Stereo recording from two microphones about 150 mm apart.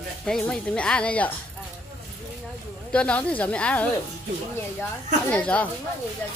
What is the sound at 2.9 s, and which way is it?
Speech, 5° left (ahead or behind).